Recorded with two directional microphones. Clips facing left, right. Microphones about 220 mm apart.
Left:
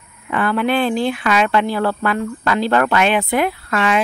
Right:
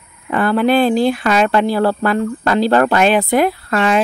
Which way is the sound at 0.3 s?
35° right (ahead or behind).